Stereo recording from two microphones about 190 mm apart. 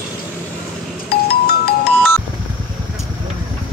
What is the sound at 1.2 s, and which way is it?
Music, 55° left (ahead or behind).